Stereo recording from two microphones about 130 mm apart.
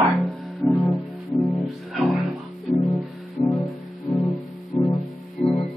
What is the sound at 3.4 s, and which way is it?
Music, 45° left (ahead or behind).